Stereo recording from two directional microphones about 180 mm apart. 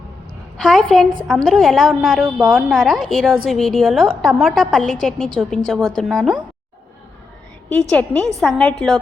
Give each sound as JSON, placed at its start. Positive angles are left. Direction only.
{"t": 0.5, "sound": "a woman's voice", "side_deg": 0}
{"t": 7.7, "sound": "a woman's voice", "side_deg": 5}